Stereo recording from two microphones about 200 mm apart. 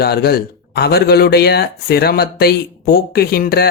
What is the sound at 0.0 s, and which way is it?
Speech, 50° left (ahead or behind).